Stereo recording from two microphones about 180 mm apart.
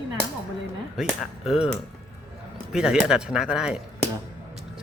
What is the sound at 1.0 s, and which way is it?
Speech, centre (ahead or behind).